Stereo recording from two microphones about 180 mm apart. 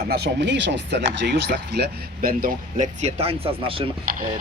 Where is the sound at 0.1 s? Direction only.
65° right (ahead or behind).